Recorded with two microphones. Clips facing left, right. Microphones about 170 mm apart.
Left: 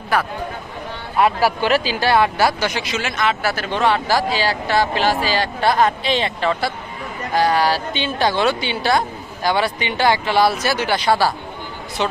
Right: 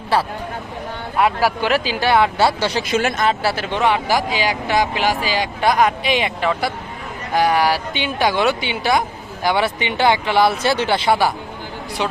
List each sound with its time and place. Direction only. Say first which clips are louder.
0.1 s speech: right 1 dB; 30° right (ahead or behind)
1.2 s speech: left 1 dB; 15° right (ahead or behind); by 2.8 s 30° right (ahead or behind)
2.8 s speech: right 3 dB; 50° right (ahead or behind)
3.4 s speech: even; 25° right (ahead or behind)
12.0 s speech: left 1 dB; 10° right (ahead or behind)